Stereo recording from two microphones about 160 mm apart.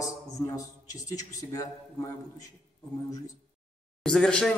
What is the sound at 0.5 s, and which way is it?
A man's voice, 20° left (ahead or behind).